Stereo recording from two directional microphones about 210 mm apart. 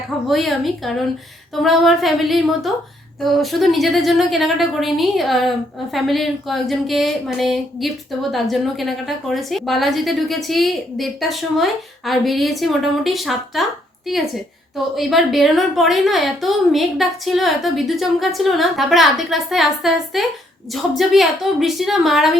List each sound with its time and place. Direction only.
0.3 s a woman's voice: centre (ahead or behind)
14.9 s a woman's voice: centre (ahead or behind)